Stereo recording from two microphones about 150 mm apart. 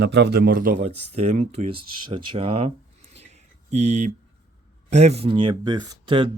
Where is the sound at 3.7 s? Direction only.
50° right (ahead or behind); by 6.3 s 35° right (ahead or behind).